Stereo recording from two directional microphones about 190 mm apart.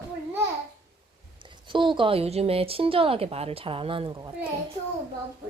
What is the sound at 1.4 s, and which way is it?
A woman's voice, 25° right (ahead or behind).